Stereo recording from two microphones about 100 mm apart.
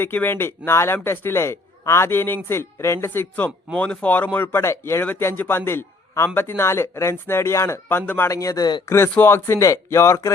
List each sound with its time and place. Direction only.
0.0 s speech: 20° left (ahead or behind)
8.3 s speech: 35° left (ahead or behind)
9.1 s speech: 25° left (ahead or behind)